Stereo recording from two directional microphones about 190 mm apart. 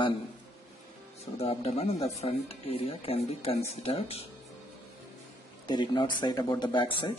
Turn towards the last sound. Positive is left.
turn(degrees=25)  # may be behind; listen again after turning